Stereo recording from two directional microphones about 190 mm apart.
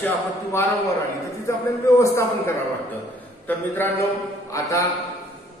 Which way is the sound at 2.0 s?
15° left (ahead or behind).